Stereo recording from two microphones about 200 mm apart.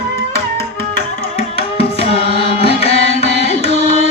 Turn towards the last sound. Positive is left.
turn(degrees=30)  # may be behind; listen again after turning